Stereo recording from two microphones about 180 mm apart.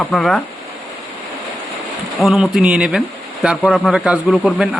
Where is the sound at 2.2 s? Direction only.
Centre (ahead or behind).